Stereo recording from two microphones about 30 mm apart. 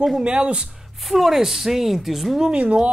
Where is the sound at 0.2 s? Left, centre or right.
Right.